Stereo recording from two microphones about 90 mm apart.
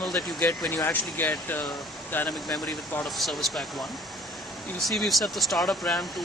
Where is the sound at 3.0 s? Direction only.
5° left (ahead or behind).